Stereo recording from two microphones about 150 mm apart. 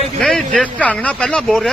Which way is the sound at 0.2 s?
5° left (ahead or behind).